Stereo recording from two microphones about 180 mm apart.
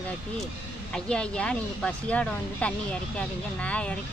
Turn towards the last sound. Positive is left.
turn(degrees=5)  # may be behind; listen again after turning